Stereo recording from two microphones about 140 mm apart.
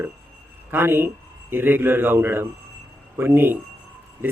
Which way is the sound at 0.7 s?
15° right (ahead or behind).